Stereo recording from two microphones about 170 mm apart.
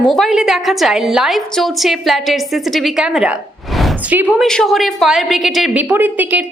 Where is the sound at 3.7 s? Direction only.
Centre (ahead or behind).